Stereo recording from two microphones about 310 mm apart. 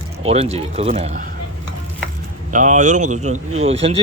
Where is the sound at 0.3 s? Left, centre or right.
Centre.